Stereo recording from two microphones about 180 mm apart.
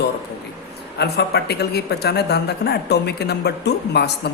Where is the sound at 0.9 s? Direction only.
65° left (ahead or behind).